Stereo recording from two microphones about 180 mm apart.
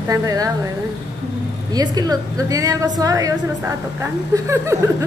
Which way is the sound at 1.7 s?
20° right (ahead or behind).